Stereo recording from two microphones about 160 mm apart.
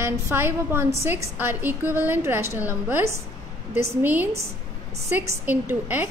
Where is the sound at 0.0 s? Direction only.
15° right (ahead or behind).